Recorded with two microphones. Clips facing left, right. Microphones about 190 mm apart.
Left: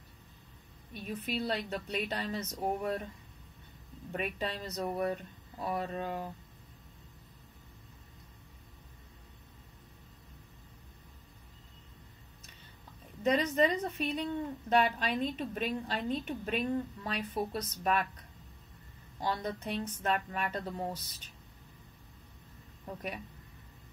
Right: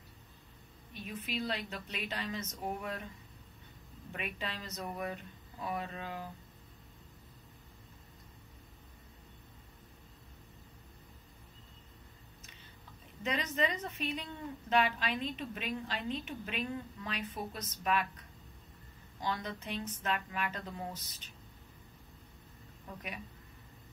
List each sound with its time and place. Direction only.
1.0 s a woman's voice: 40° left (ahead or behind)
4.1 s a woman's voice: 40° left (ahead or behind)
13.2 s a woman's voice: 40° left (ahead or behind)
19.2 s a woman's voice: 35° left (ahead or behind)